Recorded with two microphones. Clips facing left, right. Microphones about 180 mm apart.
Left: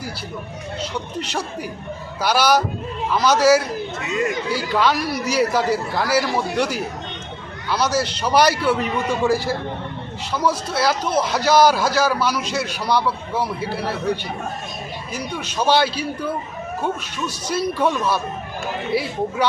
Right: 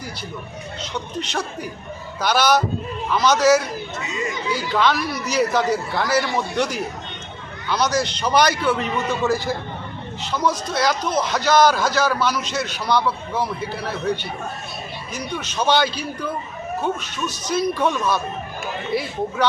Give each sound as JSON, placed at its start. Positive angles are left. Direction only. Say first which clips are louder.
{"t": 0.8, "sound": "a man's voice", "louder": "left 1 dB", "side_deg": 10}
{"t": 3.9, "sound": "speech", "louder": "left 6 dB", "side_deg": 60}
{"t": 4.5, "sound": "a man's voice", "louder": "right 1 dB", "side_deg": 5}
{"t": 15.1, "sound": "a man's voice", "louder": "even", "side_deg": 10}